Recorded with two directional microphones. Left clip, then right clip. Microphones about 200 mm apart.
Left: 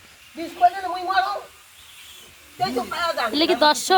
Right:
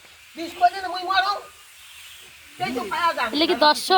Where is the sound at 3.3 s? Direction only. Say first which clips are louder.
Left 2 dB; 15° right (ahead or behind).